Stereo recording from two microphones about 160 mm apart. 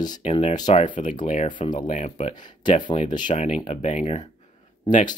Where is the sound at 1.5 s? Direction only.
30° left (ahead or behind).